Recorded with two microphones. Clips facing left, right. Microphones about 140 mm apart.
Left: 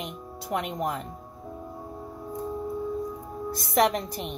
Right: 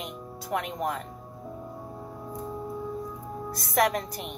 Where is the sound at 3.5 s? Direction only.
25° left (ahead or behind).